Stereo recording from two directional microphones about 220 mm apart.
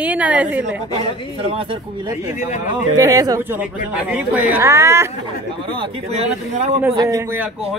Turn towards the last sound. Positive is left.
turn(degrees=-15)  # may be behind; listen again after turning